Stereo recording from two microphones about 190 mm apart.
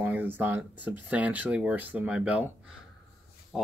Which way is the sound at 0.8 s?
10° right (ahead or behind).